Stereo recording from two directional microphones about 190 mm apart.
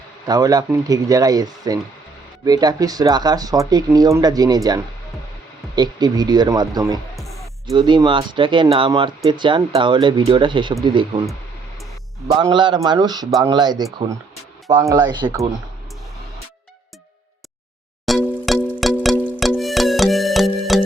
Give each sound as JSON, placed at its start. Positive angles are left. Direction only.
{"t": 0.3, "sound": "speech", "side_deg": -20}
{"t": 12.3, "sound": "speech", "side_deg": -20}
{"t": 18.0, "sound": "music", "side_deg": 0}